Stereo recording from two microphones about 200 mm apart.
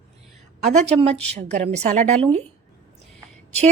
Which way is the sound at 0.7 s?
30° right (ahead or behind).